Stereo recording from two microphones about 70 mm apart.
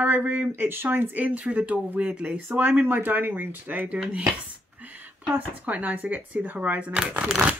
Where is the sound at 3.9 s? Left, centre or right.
Centre.